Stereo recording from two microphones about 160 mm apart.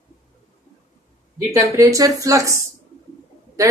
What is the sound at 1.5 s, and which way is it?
Speech, 20° right (ahead or behind).